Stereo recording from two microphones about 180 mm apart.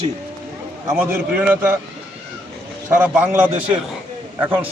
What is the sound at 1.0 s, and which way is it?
Speech, 5° right (ahead or behind).